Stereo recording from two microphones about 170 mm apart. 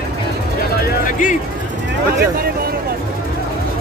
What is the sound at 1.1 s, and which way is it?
Speech, 50° left (ahead or behind).